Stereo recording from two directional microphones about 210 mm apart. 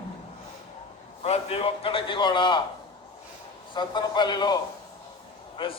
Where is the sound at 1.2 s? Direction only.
25° left (ahead or behind).